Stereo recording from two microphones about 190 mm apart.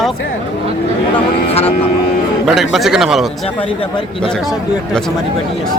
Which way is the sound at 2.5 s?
Centre (ahead or behind).